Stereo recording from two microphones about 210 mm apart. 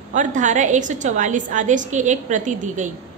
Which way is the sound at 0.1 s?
35° right (ahead or behind).